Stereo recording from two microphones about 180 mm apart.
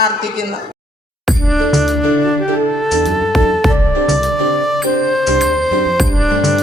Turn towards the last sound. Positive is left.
turn(degrees=0)  # may be behind; listen again after turning